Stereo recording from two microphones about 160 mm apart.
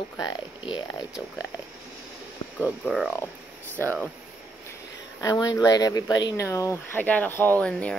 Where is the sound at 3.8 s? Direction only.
10° left (ahead or behind).